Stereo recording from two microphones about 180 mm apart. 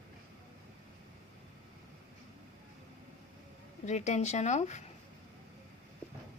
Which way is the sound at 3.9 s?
40° left (ahead or behind).